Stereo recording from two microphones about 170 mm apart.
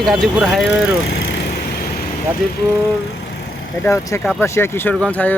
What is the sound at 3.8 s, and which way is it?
Speech, 20° left (ahead or behind).